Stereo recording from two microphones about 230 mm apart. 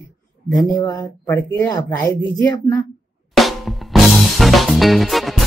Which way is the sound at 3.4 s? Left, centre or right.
Centre.